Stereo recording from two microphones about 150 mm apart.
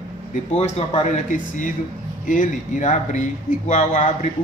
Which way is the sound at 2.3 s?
60° left (ahead or behind).